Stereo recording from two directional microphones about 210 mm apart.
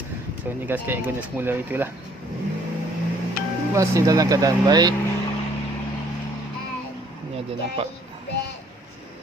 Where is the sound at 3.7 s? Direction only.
15° right (ahead or behind).